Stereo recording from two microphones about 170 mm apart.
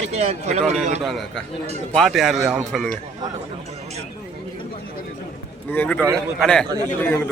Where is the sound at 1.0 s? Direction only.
Centre (ahead or behind).